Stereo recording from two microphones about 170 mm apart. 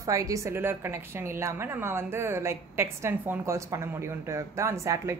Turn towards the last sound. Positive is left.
turn(degrees=-15)  # may be behind; listen again after turning